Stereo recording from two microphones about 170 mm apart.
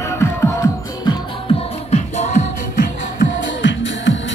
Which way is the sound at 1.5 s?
40° left (ahead or behind).